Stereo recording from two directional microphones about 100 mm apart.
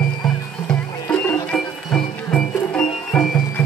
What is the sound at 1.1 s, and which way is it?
Music, 15° left (ahead or behind).